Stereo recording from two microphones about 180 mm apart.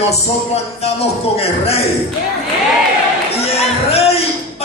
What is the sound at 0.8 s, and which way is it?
Speech, 35° left (ahead or behind).